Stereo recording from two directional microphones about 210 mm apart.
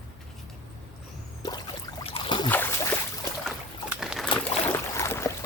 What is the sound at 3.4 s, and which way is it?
Boat, centre (ahead or behind).